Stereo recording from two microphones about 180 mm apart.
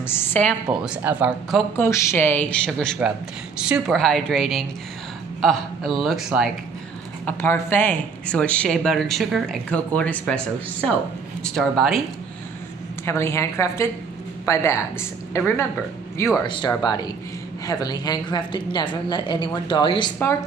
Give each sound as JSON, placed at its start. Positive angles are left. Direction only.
{"t": 0.0, "sound": "speech", "side_deg": 10}
{"t": 0.8, "sound": "speech", "side_deg": -5}
{"t": 1.8, "sound": "a woman's voice", "side_deg": 15}
{"t": 7.2, "sound": "speech", "side_deg": 10}
{"t": 11.4, "sound": "a woman's voice", "side_deg": 0}
{"t": 13.0, "sound": "speech", "side_deg": 15}
{"t": 16.4, "sound": "a woman's voice", "side_deg": 25}